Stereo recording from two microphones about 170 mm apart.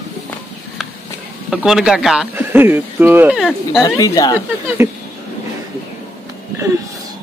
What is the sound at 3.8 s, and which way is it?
Speech, 20° left (ahead or behind).